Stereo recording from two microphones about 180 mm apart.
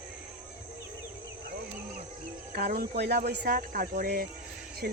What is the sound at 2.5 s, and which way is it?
Speech, 55° right (ahead or behind).